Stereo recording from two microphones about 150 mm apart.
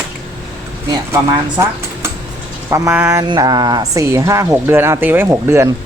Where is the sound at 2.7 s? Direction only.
20° right (ahead or behind).